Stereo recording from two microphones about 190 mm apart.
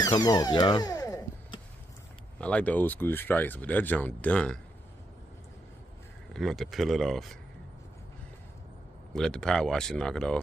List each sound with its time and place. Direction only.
0.0 s a sound: 20° left (ahead or behind)
2.4 s speech: 5° left (ahead or behind)
6.3 s speech: centre (ahead or behind)
9.1 s speech: 5° left (ahead or behind)